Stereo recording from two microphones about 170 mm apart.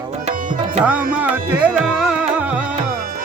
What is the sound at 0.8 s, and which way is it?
Music, 10° right (ahead or behind).